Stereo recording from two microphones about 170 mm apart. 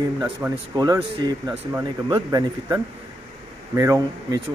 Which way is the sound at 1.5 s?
15° right (ahead or behind).